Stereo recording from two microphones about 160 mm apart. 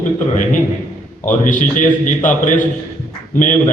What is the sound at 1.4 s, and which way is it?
A man's voice, 55° left (ahead or behind).